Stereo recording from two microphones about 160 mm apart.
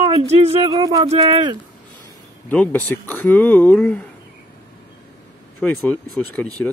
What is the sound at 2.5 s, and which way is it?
Speech, 10° left (ahead or behind).